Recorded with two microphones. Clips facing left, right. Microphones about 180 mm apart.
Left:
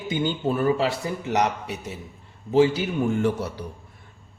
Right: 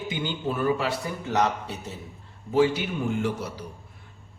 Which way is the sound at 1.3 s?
15° left (ahead or behind).